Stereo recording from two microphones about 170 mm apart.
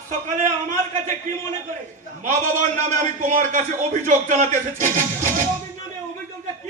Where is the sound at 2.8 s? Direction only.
45° right (ahead or behind).